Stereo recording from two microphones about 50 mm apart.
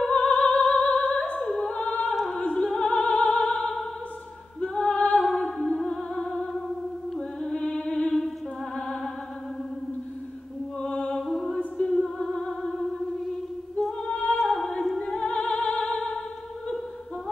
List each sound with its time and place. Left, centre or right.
0.0 s music: left
2.5 s opera: centre
4.6 s music: left
5.2 s music: centre
10.8 s music: left
11.1 s music: centre
14.0 s music: left